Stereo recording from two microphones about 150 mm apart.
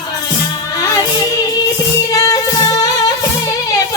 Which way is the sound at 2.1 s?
25° left (ahead or behind).